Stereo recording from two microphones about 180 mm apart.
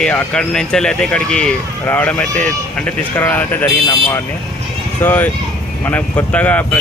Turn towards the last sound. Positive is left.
turn(degrees=10)  # may be behind; listen again after turning